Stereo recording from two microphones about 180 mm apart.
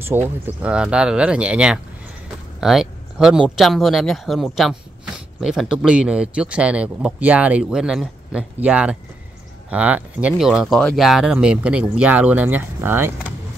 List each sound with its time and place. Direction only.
0.1 s speech: 10° right (ahead or behind)